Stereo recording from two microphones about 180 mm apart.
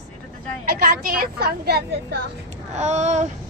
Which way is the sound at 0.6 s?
55° right (ahead or behind).